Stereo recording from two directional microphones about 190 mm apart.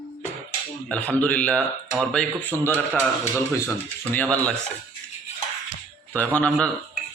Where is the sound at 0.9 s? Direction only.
5° left (ahead or behind).